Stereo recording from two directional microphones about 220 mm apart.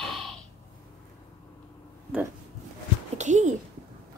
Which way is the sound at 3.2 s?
35° right (ahead or behind).